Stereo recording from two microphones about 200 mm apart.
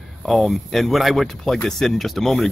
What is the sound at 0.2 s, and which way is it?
Speech, centre (ahead or behind).